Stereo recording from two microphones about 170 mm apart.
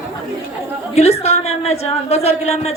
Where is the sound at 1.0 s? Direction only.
40° left (ahead or behind).